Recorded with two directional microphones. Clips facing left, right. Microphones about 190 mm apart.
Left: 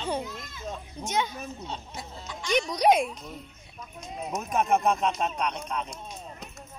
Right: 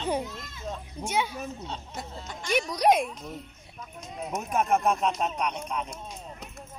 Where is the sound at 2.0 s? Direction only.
55° right (ahead or behind).